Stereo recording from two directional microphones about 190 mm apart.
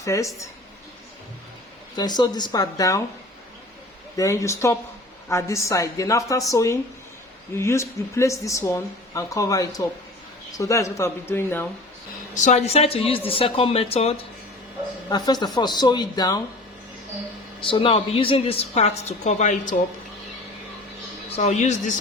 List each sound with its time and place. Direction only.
0.0 s speech: 15° left (ahead or behind)
2.0 s speech: 20° left (ahead or behind)
4.2 s speech: 15° left (ahead or behind)
12.3 s a woman's voice: 40° left (ahead or behind); by 16.4 s 20° left (ahead or behind)
17.6 s a woman's voice: 25° left (ahead or behind)
21.2 s a man's voice: 35° left (ahead or behind)